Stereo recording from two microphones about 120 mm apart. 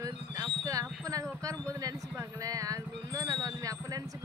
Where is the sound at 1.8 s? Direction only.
30° right (ahead or behind).